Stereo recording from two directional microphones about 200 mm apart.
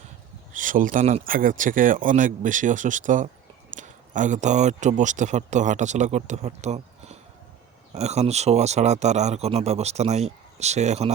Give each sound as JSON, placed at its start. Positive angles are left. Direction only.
{"t": 0.5, "sound": "speech", "side_deg": -40}